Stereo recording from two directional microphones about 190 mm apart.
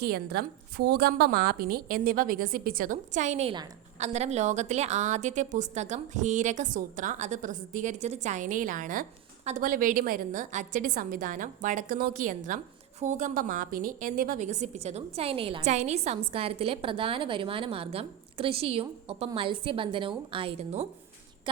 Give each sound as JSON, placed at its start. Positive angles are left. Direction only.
{"t": 0.0, "sound": "a woman's voice", "side_deg": -55}